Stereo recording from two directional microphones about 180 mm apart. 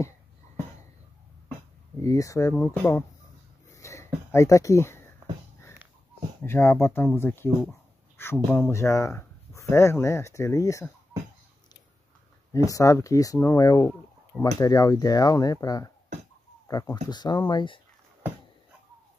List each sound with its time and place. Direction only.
2.0 s speech: 20° left (ahead or behind)
3.7 s a sound: 15° left (ahead or behind)
6.4 s speech: 15° left (ahead or behind)
12.6 s speech: 15° left (ahead or behind)